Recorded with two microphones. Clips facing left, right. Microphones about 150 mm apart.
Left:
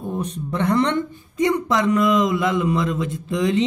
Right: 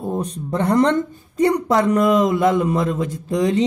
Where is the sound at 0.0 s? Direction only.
35° right (ahead or behind).